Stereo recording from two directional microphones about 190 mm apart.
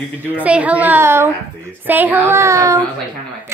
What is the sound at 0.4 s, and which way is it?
Speech, 5° right (ahead or behind).